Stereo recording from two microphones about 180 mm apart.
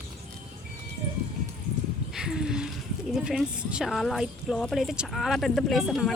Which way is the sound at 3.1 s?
5° right (ahead or behind).